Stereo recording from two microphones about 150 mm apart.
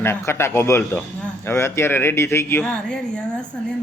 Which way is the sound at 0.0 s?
15° left (ahead or behind).